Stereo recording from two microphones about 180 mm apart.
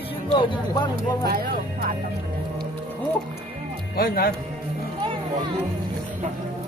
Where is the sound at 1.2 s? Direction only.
55° right (ahead or behind).